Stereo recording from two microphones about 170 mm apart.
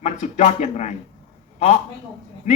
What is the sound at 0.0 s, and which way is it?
A man's voice, 45° left (ahead or behind).